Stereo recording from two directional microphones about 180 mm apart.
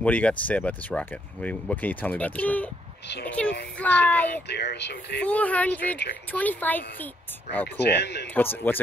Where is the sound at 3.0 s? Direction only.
70° left (ahead or behind).